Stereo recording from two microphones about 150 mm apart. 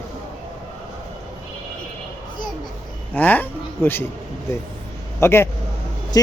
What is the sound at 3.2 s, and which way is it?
Speech, 10° left (ahead or behind).